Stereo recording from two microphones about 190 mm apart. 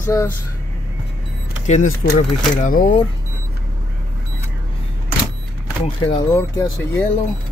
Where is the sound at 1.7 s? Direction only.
40° left (ahead or behind).